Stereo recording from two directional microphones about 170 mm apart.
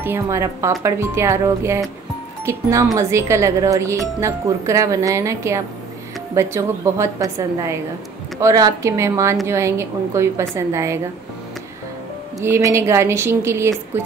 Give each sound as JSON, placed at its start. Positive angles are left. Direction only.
{"t": 0.0, "sound": "speech", "side_deg": -15}
{"t": 12.4, "sound": "speech", "side_deg": -15}